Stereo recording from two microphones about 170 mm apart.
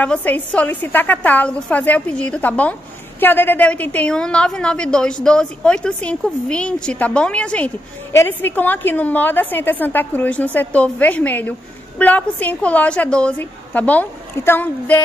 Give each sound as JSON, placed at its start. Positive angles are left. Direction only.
{"t": 0.0, "sound": "a woman's voice", "side_deg": 10}